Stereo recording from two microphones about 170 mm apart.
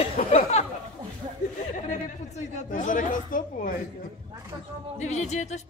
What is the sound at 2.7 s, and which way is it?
Speech, 50° left (ahead or behind).